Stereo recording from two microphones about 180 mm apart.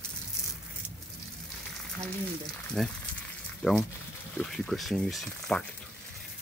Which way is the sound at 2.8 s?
Centre (ahead or behind).